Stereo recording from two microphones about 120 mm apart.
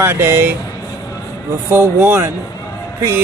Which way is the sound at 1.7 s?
15° right (ahead or behind).